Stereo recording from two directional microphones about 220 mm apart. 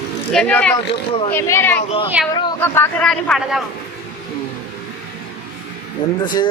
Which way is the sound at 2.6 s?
5° left (ahead or behind).